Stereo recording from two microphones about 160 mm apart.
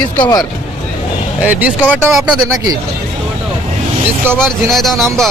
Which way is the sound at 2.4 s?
20° right (ahead or behind).